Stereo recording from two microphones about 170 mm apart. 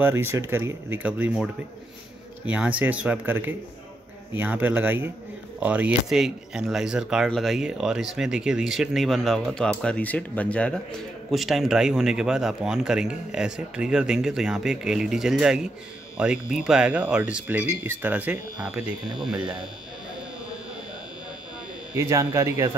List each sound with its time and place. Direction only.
0.0 s speech: 15° right (ahead or behind)
21.9 s speech: 15° right (ahead or behind)